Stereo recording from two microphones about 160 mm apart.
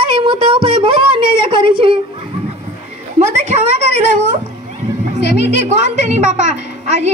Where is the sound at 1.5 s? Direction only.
35° right (ahead or behind).